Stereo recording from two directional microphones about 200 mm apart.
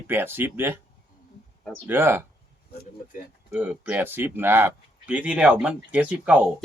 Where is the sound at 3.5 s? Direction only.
5° right (ahead or behind).